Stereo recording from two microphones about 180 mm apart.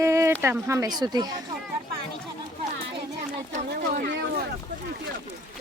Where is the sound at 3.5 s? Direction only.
45° right (ahead or behind).